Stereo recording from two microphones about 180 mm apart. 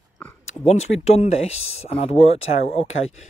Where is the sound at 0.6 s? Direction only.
35° left (ahead or behind).